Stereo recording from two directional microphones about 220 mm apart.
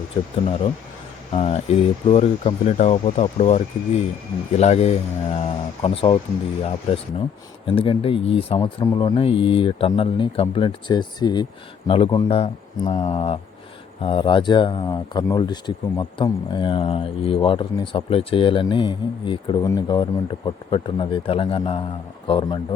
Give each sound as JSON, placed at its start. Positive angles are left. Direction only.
{"t": 1.3, "sound": "speech", "side_deg": 25}
{"t": 8.5, "sound": "speech", "side_deg": 15}